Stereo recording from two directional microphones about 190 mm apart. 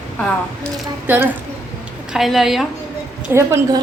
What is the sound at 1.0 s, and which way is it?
A woman's voice, 10° right (ahead or behind).